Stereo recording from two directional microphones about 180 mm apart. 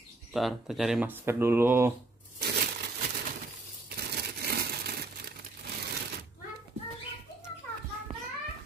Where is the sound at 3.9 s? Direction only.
65° right (ahead or behind).